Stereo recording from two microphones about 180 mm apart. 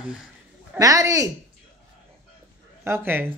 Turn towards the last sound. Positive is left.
turn(degrees=-10)  # may be behind; listen again after turning